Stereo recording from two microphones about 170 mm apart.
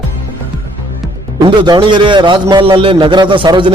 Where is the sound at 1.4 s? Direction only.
30° right (ahead or behind).